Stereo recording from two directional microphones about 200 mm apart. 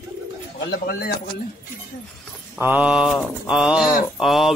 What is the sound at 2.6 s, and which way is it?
Speech, 10° right (ahead or behind).